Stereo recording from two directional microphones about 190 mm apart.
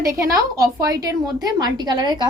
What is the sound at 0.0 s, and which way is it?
A woman's voice, 15° right (ahead or behind).